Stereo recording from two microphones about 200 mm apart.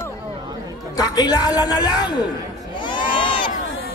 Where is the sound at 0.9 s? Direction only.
20° left (ahead or behind).